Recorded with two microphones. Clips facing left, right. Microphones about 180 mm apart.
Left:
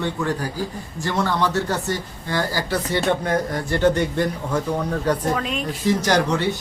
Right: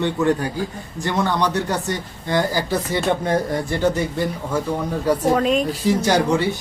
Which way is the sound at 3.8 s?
5° right (ahead or behind).